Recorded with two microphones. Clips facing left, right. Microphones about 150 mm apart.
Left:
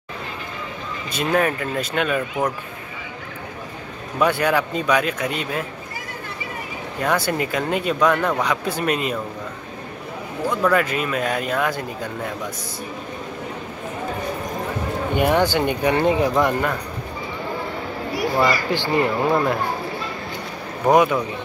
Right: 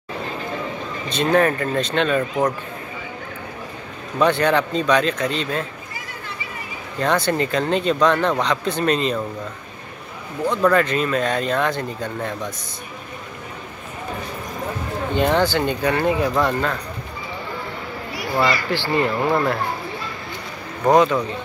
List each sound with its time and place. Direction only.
1.3 s speech: 5° left (ahead or behind)
4.2 s speech: 5° left (ahead or behind)
7.0 s speech: 5° left (ahead or behind)
10.5 s speech: 5° left (ahead or behind)
15.1 s speech: 15° left (ahead or behind)
18.7 s speech: 15° left (ahead or behind)
20.8 s speech: 10° left (ahead or behind)